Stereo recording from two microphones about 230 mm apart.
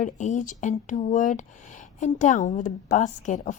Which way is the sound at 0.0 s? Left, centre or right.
Left.